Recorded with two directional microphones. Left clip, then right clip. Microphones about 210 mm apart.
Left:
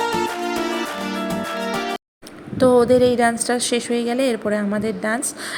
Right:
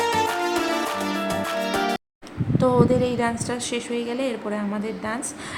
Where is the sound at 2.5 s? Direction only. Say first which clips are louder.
Left 6 dB; 15° left (ahead or behind).